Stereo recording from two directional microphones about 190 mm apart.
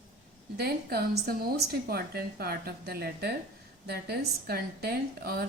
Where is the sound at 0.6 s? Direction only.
55° right (ahead or behind).